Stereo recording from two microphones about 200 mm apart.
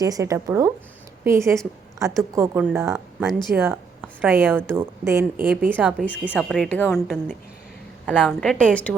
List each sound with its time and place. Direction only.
0.0 s a woman's voice: 15° right (ahead or behind)
3.2 s a woman's voice: centre (ahead or behind)
8.0 s a woman's voice: centre (ahead or behind)